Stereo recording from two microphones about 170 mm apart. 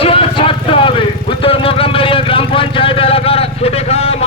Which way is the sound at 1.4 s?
35° left (ahead or behind).